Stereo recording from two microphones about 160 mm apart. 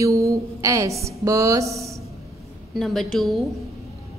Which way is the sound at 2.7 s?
Centre (ahead or behind).